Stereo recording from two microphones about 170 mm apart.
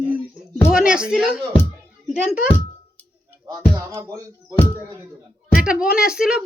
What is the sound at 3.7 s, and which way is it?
Speech, 15° right (ahead or behind).